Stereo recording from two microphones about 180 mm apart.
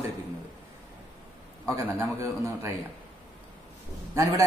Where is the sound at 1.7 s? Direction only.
10° right (ahead or behind).